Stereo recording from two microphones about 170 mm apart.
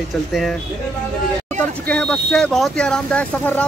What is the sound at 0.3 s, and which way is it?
Speech, centre (ahead or behind).